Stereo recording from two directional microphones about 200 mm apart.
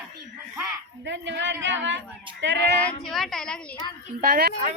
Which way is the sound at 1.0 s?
65° right (ahead or behind).